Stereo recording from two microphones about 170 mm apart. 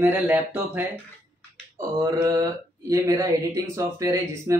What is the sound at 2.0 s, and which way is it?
Speech, 20° right (ahead or behind).